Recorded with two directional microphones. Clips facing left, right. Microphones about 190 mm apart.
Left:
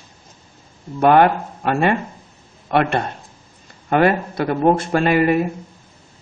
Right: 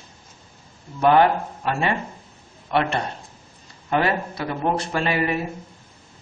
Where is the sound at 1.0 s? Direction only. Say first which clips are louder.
Left 3 dB; 55° left (ahead or behind).